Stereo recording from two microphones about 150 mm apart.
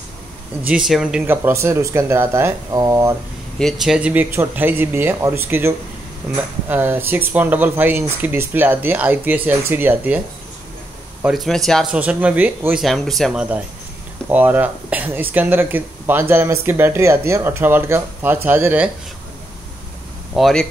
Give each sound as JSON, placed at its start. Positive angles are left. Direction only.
{"t": 0.7, "sound": "speech", "side_deg": -5}
{"t": 1.2, "sound": "speech", "side_deg": -15}
{"t": 3.5, "sound": "speech", "side_deg": 0}
{"t": 11.2, "sound": "speech", "side_deg": 0}
{"t": 12.8, "sound": "speech", "side_deg": 0}
{"t": 20.3, "sound": "speech", "side_deg": 0}